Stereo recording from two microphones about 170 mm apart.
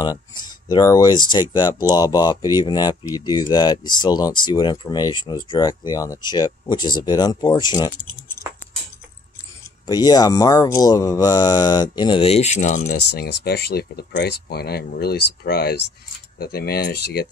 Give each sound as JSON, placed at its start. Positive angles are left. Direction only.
{"t": 0.0, "sound": "speech", "side_deg": 25}
{"t": 9.8, "sound": "speech", "side_deg": 25}
{"t": 13.1, "sound": "speech", "side_deg": 75}